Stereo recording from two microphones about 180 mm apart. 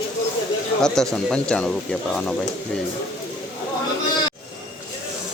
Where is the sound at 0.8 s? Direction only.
5° left (ahead or behind).